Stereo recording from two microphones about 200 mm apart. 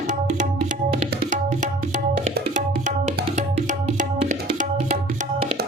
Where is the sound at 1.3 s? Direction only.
40° right (ahead or behind).